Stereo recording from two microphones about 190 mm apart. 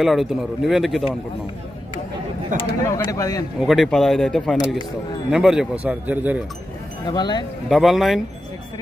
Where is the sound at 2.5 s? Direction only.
45° right (ahead or behind).